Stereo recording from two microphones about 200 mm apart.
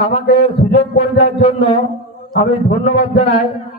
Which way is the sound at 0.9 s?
30° left (ahead or behind).